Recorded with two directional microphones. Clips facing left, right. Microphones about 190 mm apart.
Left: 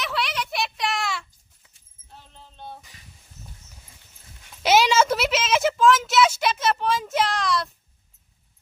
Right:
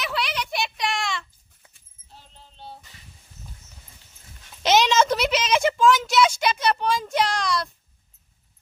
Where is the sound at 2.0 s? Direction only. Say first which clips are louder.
Left 2 dB; 55° left (ahead or behind).